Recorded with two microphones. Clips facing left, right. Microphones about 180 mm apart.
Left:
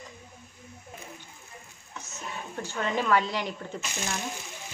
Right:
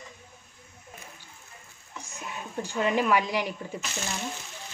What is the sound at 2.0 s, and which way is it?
Speech, 15° right (ahead or behind).